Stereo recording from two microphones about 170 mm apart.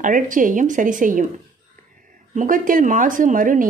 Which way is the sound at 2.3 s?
50° right (ahead or behind).